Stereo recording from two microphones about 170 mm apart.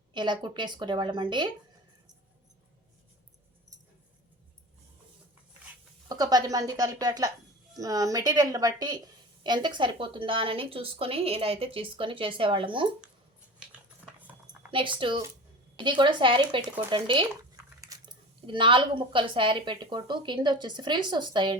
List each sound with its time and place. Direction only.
0.1 s speech: 25° right (ahead or behind)
6.1 s a woman's voice: 25° right (ahead or behind)
13.6 s a sound: 5° right (ahead or behind)
14.7 s speech: 30° right (ahead or behind)